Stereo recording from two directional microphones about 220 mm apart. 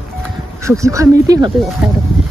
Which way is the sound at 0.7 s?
15° right (ahead or behind).